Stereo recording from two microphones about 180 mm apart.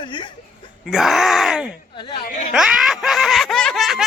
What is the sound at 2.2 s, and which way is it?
Speech, 40° left (ahead or behind).